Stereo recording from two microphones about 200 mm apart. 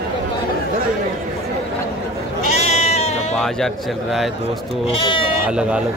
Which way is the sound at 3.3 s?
Centre (ahead or behind).